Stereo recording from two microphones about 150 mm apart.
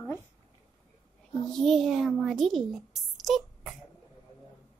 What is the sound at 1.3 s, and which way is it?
A child's voice, 5° left (ahead or behind).